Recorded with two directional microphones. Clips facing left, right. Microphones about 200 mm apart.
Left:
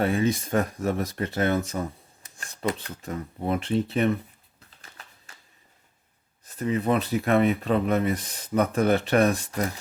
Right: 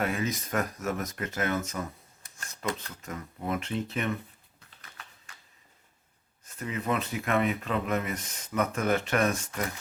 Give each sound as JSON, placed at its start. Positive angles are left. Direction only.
{"t": 0.0, "sound": "speech", "side_deg": 30}
{"t": 6.4, "sound": "speech", "side_deg": 35}